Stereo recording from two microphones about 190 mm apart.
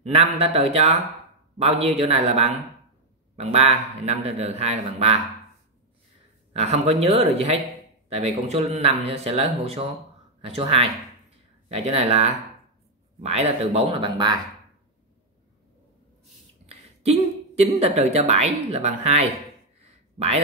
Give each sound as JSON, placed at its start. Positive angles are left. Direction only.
{"t": 0.0, "sound": "speech", "side_deg": -30}
{"t": 6.5, "sound": "speech", "side_deg": -35}
{"t": 17.6, "sound": "speech", "side_deg": -35}
{"t": 19.8, "sound": "a sound", "side_deg": -35}